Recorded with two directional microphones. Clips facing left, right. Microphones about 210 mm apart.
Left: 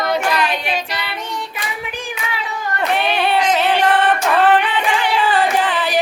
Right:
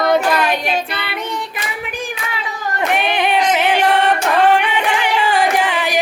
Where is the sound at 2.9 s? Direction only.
15° right (ahead or behind).